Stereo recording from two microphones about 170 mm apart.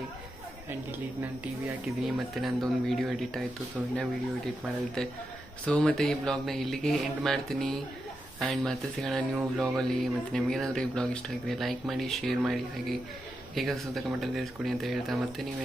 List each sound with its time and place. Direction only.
0.9 s speech: 10° right (ahead or behind)
5.7 s speech: 5° left (ahead or behind)